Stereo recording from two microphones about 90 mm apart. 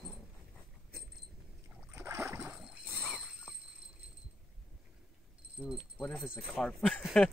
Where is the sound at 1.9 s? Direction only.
30° right (ahead or behind).